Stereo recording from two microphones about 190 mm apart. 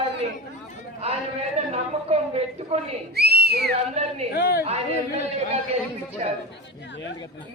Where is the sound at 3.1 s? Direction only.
55° right (ahead or behind).